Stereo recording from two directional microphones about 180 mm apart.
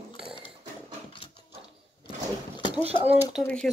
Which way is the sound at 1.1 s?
25° left (ahead or behind).